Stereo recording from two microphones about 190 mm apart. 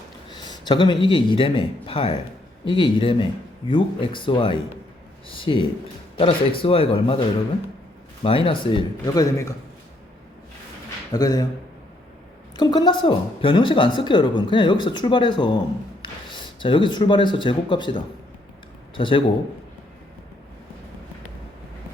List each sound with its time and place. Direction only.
0.3 s a man's voice: 25° left (ahead or behind)
8.2 s speech: 30° left (ahead or behind)
11.1 s speech: 20° left (ahead or behind)
12.5 s speech: 25° left (ahead or behind)